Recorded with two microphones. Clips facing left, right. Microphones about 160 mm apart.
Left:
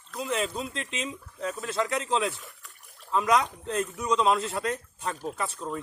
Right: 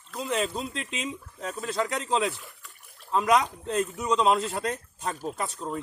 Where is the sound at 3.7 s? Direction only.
25° right (ahead or behind).